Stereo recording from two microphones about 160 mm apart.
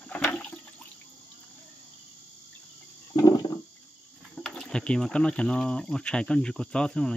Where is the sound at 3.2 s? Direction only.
25° left (ahead or behind).